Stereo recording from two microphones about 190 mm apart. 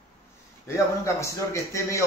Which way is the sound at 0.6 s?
15° left (ahead or behind).